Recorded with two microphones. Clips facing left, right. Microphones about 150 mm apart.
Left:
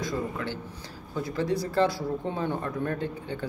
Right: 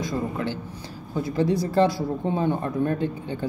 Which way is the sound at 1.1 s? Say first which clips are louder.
Right 5 dB; 20° right (ahead or behind).